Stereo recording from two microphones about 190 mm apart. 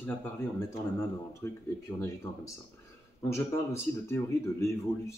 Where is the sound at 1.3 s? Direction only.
15° left (ahead or behind).